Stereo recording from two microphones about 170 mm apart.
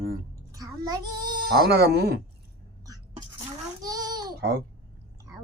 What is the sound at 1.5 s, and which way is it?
Speech, 65° right (ahead or behind).